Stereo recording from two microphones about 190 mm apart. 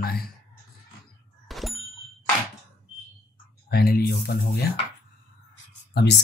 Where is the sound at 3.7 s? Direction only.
55° left (ahead or behind).